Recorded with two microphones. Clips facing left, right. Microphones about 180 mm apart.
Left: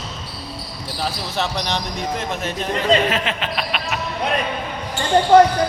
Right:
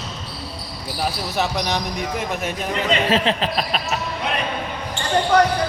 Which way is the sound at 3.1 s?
35° right (ahead or behind).